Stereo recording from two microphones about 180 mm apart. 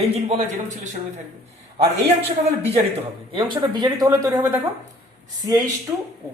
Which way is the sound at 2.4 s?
35° right (ahead or behind).